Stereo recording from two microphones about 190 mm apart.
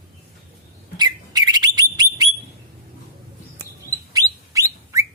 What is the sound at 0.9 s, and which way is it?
Bird, 20° right (ahead or behind).